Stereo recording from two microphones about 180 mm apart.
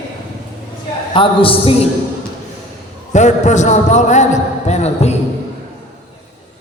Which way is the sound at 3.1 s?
40° left (ahead or behind).